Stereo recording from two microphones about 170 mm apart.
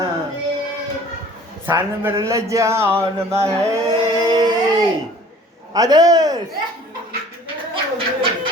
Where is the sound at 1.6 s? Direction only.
15° right (ahead or behind).